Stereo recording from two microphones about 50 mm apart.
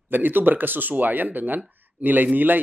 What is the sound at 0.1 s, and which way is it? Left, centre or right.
Speech, right.